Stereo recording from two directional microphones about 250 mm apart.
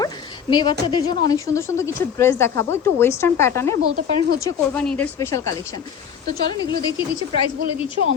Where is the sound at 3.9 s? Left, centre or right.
Right.